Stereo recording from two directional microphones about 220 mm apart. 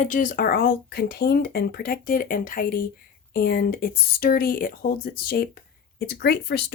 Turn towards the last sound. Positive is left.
turn(degrees=50)  # may be behind; listen again after turning